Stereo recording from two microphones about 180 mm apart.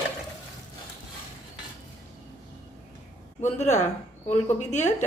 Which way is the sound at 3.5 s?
40° left (ahead or behind).